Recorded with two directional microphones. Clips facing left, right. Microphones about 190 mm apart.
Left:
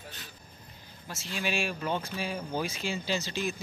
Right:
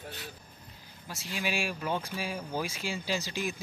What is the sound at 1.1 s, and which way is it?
Speech, 10° right (ahead or behind).